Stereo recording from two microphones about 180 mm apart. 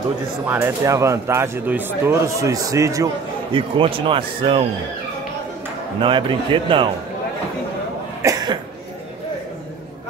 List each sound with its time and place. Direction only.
0.5 s speech: 10° right (ahead or behind)
3.5 s speech: 30° right (ahead or behind)
5.9 s speech: 25° right (ahead or behind)
8.2 s cough: 20° right (ahead or behind)